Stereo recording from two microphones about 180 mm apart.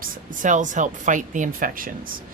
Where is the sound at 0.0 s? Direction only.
45° right (ahead or behind).